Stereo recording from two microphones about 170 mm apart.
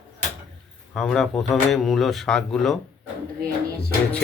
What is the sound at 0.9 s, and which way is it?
Speech, centre (ahead or behind).